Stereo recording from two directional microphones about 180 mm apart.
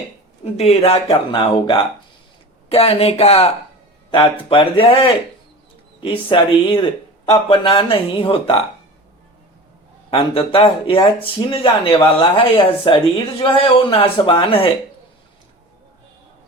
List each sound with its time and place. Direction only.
0.4 s speech: 35° left (ahead or behind)
10.1 s speech: 30° left (ahead or behind)